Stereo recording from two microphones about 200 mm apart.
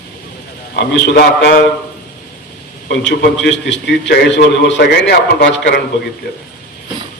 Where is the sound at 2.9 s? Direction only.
60° left (ahead or behind).